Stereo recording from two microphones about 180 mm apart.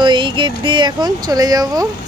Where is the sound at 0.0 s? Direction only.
25° right (ahead or behind).